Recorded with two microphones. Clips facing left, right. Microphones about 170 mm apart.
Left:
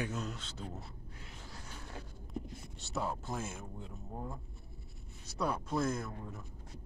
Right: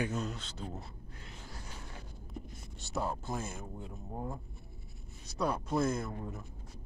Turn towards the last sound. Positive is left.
turn(degrees=-5)  # may be behind; listen again after turning